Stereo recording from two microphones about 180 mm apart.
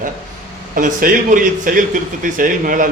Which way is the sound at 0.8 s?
50° right (ahead or behind).